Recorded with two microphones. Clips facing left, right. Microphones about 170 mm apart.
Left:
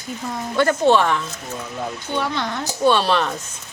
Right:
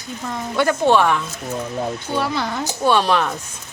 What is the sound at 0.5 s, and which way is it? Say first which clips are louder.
Speech: even; 10° right (ahead or behind).